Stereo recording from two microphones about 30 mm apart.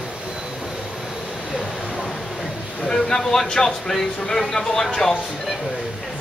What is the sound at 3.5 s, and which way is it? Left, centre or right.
Speech, centre.